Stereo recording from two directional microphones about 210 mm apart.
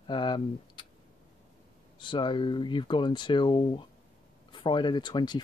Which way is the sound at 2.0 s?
25° left (ahead or behind).